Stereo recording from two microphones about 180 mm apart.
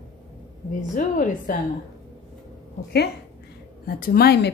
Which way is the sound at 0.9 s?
45° left (ahead or behind).